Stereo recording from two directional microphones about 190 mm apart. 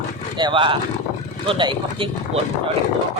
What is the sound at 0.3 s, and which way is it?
Speech, 25° right (ahead or behind).